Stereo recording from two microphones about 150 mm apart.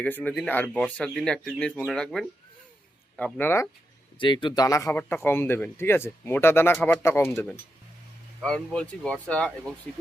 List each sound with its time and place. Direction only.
0.0 s speech: 10° left (ahead or behind)
4.2 s speech: 35° left (ahead or behind); by 9.7 s 5° left (ahead or behind)